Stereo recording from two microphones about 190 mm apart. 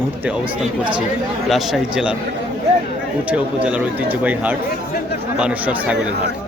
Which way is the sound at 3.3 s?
5° right (ahead or behind).